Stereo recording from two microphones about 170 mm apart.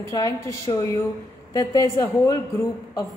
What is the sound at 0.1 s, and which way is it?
A woman's voice, 20° left (ahead or behind).